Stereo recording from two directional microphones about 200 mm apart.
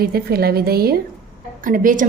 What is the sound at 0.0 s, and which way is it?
A woman's voice, 50° right (ahead or behind).